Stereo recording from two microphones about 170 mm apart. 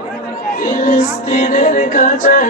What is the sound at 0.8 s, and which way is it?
Music, 50° left (ahead or behind).